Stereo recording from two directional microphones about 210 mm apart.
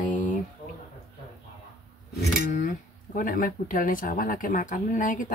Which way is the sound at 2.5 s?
35° left (ahead or behind).